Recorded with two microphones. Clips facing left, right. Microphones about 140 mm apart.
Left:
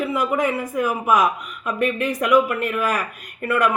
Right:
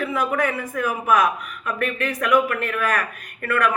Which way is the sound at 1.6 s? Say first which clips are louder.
Left 3 dB; 20° left (ahead or behind).